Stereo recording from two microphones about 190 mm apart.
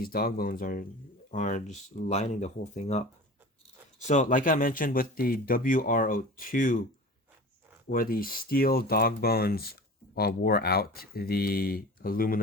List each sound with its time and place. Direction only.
0.0 s speech: 50° left (ahead or behind)
4.0 s speech: 40° left (ahead or behind)
7.9 s speech: 50° left (ahead or behind)